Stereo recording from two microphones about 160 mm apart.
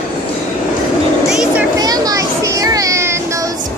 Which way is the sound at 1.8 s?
25° right (ahead or behind).